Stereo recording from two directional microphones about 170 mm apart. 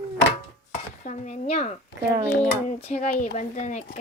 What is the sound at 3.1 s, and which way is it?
Speech, 60° left (ahead or behind).